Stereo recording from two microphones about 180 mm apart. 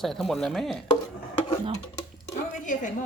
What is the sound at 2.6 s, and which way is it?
Speech, 45° left (ahead or behind).